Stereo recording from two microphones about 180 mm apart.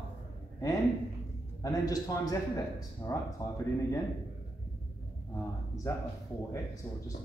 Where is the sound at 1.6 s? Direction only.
20° left (ahead or behind).